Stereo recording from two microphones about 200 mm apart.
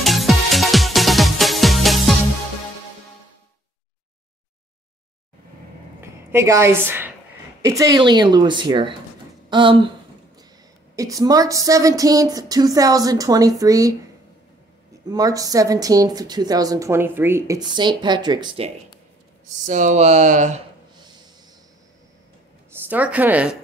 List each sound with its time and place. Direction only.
0.0 s music: centre (ahead or behind)
5.9 s a sound: 15° right (ahead or behind)
7.6 s a woman's voice: 15° right (ahead or behind)
11.0 s speech: 15° right (ahead or behind)
15.0 s speech: 20° right (ahead or behind)
19.6 s speech: 40° right (ahead or behind)
22.8 s speech: 5° right (ahead or behind)